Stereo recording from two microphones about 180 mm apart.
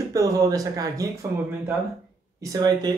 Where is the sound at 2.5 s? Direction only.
20° right (ahead or behind).